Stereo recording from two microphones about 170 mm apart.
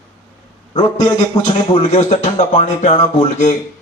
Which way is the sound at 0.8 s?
40° left (ahead or behind).